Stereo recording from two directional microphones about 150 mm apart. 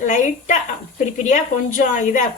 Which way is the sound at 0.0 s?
55° left (ahead or behind).